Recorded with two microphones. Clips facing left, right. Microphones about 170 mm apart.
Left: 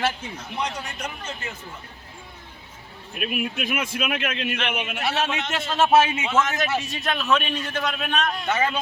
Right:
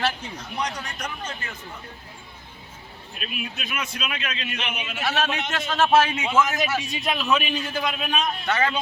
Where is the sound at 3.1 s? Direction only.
55° left (ahead or behind).